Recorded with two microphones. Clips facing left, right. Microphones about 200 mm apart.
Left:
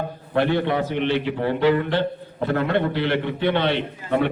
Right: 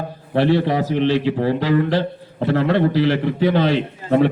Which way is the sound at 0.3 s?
35° right (ahead or behind).